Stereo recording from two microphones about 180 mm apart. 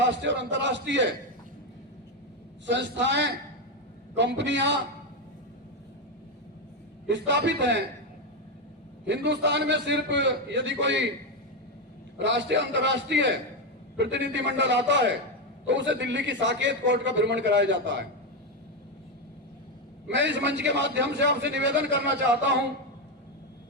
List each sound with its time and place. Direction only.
0.1 s a man's voice: 80° right
2.6 s a man's voice: 80° right
7.1 s a man's voice: 80° right
9.0 s a man's voice: 75° right (ahead or behind)
12.2 s a man's voice: 80° right
20.1 s a man's voice: 85° right